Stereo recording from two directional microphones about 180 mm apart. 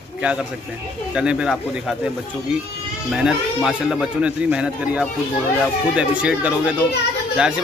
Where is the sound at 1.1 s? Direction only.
5° right (ahead or behind).